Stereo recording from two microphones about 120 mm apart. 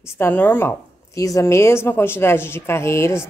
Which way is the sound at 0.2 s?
15° left (ahead or behind).